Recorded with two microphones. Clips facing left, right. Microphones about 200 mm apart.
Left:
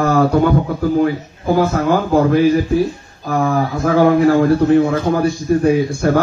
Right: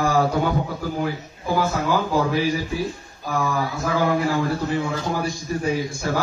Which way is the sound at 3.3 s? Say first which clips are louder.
Left 7 dB; 60° left (ahead or behind).